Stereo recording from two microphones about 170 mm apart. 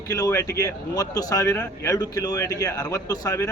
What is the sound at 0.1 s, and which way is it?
A man's voice, 20° left (ahead or behind).